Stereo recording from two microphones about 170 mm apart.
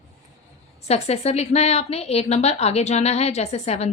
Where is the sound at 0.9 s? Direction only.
40° left (ahead or behind).